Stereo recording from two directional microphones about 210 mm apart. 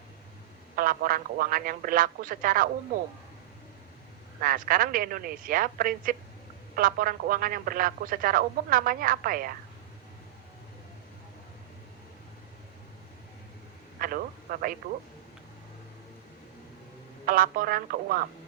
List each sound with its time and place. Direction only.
0.8 s speech: 40° right (ahead or behind)
4.4 s speech: 40° right (ahead or behind)
14.0 s a sound: 45° right (ahead or behind)
17.2 s speech: 40° right (ahead or behind)